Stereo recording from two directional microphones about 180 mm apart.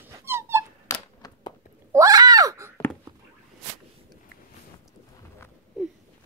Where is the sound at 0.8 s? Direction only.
20° left (ahead or behind).